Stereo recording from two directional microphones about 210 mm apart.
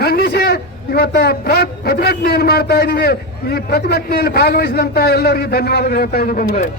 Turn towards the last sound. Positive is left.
turn(degrees=40)  # may be behind; listen again after turning